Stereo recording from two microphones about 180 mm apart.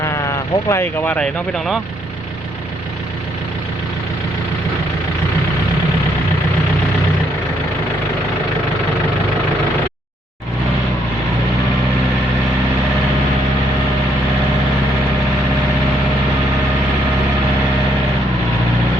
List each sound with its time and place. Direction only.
0.0 s speech: 15° left (ahead or behind); by 1.8 s centre (ahead or behind)